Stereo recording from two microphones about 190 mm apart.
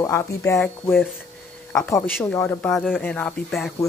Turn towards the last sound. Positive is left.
turn(degrees=5)  # may be behind; listen again after turning